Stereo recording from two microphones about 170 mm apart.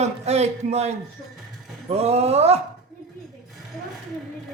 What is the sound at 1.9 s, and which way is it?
Speech, 40° right (ahead or behind).